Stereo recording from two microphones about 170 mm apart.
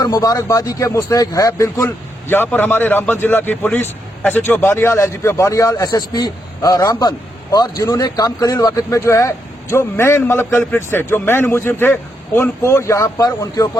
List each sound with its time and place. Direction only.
0.0 s speech: 20° left (ahead or behind)